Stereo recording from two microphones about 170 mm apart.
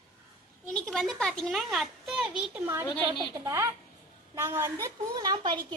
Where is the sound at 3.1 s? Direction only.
20° right (ahead or behind).